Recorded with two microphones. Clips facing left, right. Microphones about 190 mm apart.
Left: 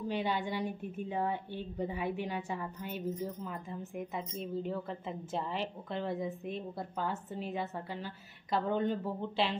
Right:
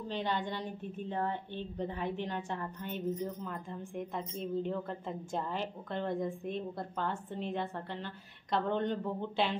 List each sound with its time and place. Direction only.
0.1 s a woman's voice: 10° left (ahead or behind)